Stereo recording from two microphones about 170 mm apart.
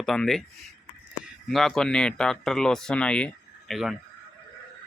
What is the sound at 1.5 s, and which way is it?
Speech, centre (ahead or behind).